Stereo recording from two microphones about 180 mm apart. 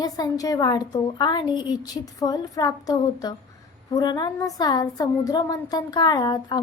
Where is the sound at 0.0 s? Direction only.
20° left (ahead or behind).